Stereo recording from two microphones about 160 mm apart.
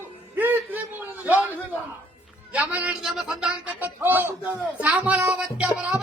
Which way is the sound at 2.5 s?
10° right (ahead or behind).